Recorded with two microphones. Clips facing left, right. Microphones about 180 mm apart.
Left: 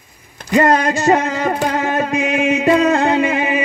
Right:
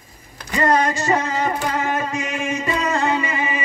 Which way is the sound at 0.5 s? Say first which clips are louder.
Left 5 dB; 75° left (ahead or behind).